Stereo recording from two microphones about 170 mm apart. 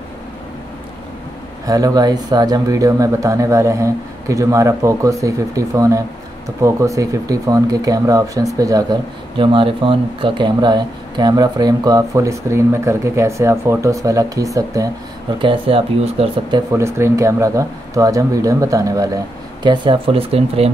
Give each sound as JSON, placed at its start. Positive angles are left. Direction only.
{"t": 1.7, "sound": "speech", "side_deg": -20}
{"t": 15.3, "sound": "speech", "side_deg": -30}
{"t": 16.7, "sound": "speech", "side_deg": -15}